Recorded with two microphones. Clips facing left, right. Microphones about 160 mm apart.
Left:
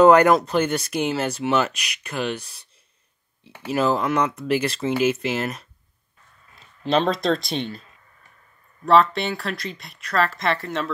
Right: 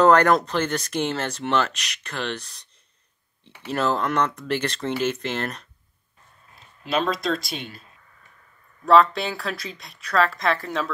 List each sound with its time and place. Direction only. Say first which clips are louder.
0.0 s speech: left 3 dB; 10° left (ahead or behind)
6.8 s speech: left 4 dB; 35° left (ahead or behind)
8.8 s speech: even; centre (ahead or behind)